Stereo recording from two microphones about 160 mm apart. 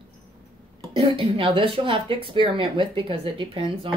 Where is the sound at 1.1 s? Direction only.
35° right (ahead or behind).